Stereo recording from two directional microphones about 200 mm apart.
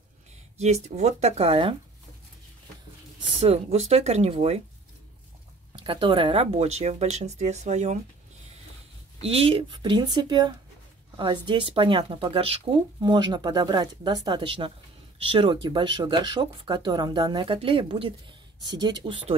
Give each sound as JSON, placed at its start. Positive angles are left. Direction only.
{"t": 0.6, "sound": "speech", "side_deg": -35}
{"t": 3.3, "sound": "speech", "side_deg": -30}
{"t": 5.9, "sound": "speech", "side_deg": -25}
{"t": 9.2, "sound": "speech", "side_deg": -30}